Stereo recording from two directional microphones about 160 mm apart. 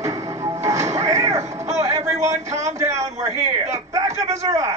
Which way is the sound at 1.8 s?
40° right (ahead or behind).